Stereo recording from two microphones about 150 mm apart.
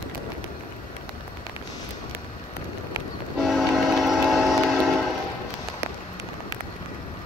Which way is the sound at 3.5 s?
Centre (ahead or behind).